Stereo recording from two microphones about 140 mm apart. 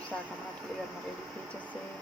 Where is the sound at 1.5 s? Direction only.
10° left (ahead or behind).